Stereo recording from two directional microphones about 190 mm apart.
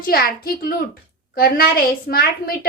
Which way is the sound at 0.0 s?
50° left (ahead or behind).